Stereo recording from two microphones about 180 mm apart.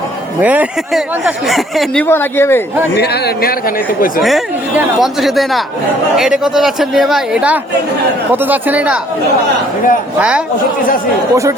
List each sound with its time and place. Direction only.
0.4 s speech: 10° right (ahead or behind)
2.0 s speech: 15° left (ahead or behind)
3.0 s speech: 65° left (ahead or behind)
4.2 s speech: centre (ahead or behind)
10.2 s speech: 5° right (ahead or behind)